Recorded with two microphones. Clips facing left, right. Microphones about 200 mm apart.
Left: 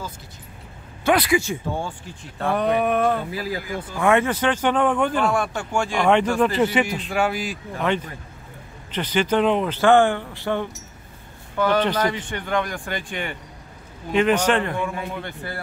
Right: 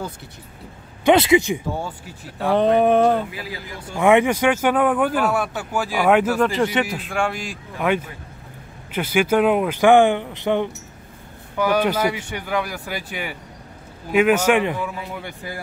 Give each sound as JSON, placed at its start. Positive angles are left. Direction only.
{"t": 1.0, "sound": "speech", "side_deg": -25}
{"t": 2.5, "sound": "speech", "side_deg": -30}
{"t": 3.3, "sound": "speech", "side_deg": 40}
{"t": 3.9, "sound": "a man's voice", "side_deg": -15}
{"t": 7.8, "sound": "speech", "side_deg": -10}